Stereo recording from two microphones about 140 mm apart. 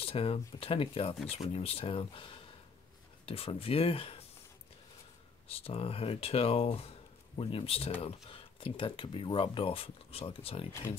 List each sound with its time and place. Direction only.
0.0 s speech: 40° left (ahead or behind)
5.5 s speech: 45° left (ahead or behind)